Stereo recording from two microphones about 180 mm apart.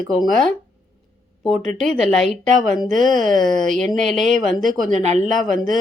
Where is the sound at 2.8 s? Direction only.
45° right (ahead or behind).